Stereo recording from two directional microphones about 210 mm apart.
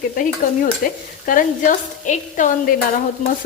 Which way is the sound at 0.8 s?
40° left (ahead or behind).